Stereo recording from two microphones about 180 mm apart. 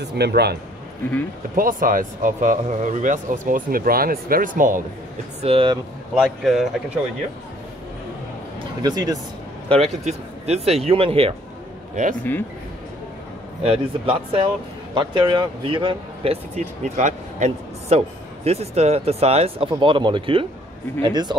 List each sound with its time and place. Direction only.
0.0 s speech: 65° right (ahead or behind)
1.6 s speech: 50° right (ahead or behind)
5.4 s speech: 30° right (ahead or behind)
6.1 s speech: centre (ahead or behind)
8.8 s speech: 20° right (ahead or behind)
9.7 s speech: 35° right (ahead or behind)
11.9 s speech: 45° right (ahead or behind)
12.2 s speech: 10° left (ahead or behind)
13.7 s speech: 30° right (ahead or behind)